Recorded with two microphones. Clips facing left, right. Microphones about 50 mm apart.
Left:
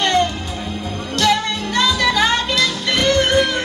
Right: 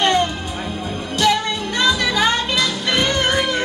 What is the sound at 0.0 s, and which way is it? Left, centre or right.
Music, centre.